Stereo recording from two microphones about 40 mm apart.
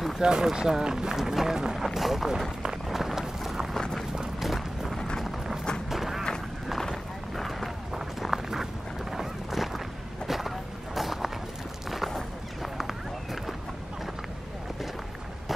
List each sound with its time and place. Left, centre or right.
0.2 s speech: centre
2.9 s run: centre
4.4 s a sound: centre
4.9 s a sound: centre
5.9 s run: centre
6.8 s run: centre
9.1 s boat: centre
10.2 s vehicle: centre
11.0 s run: centre
11.9 s a sound: centre
12.7 s run: centre